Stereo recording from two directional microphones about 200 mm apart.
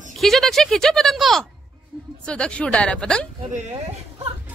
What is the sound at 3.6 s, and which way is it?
Speech, 35° right (ahead or behind).